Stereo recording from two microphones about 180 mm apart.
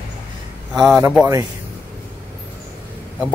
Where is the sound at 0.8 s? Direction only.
5° right (ahead or behind).